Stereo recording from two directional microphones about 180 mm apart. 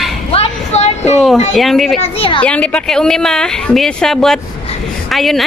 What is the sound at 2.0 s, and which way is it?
Speech, 30° left (ahead or behind).